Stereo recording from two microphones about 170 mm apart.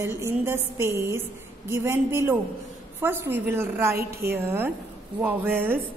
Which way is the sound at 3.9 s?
65° right (ahead or behind).